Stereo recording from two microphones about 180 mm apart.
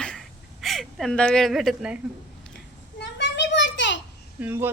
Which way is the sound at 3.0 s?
80° left.